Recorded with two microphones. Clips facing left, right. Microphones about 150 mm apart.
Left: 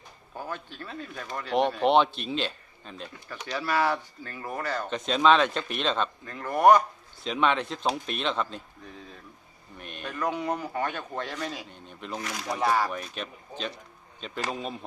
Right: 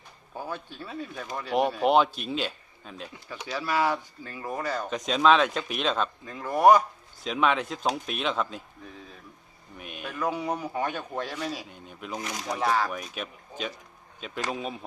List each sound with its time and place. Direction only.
0.3 s speech: 15° right (ahead or behind)
4.9 s speech: centre (ahead or behind)